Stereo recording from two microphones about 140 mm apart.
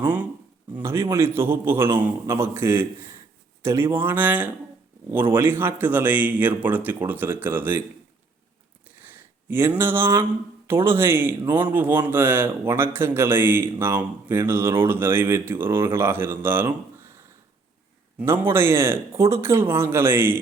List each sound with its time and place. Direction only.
0.0 s a man's voice: 10° right (ahead or behind)
9.0 s a sound: 15° right (ahead or behind)
10.7 s a man's voice: 15° right (ahead or behind)
18.2 s a man's voice: 15° right (ahead or behind)